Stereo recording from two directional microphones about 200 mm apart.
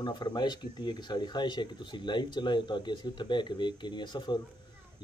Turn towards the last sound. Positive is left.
turn(degrees=20)  # may be behind; listen again after turning